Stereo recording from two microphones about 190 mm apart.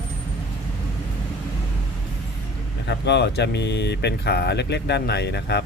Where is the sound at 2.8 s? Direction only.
65° left (ahead or behind).